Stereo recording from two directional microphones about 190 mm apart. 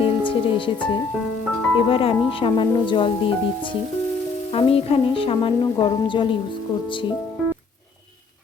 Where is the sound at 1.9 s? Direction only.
30° left (ahead or behind).